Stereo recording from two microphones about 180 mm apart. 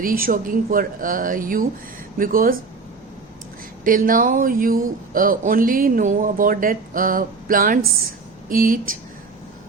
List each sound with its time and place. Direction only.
0.0 s speech: 50° right (ahead or behind)
3.8 s speech: 50° right (ahead or behind)